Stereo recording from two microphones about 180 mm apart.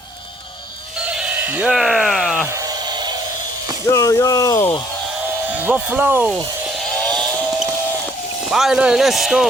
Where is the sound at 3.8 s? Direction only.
15° left (ahead or behind).